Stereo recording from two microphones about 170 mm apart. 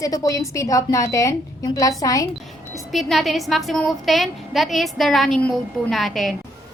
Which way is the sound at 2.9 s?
Centre (ahead or behind).